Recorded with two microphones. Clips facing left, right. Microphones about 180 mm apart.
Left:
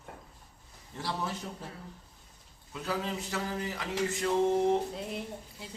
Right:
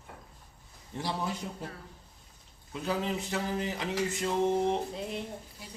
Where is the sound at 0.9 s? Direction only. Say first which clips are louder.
Right 1 dB; 15° right (ahead or behind).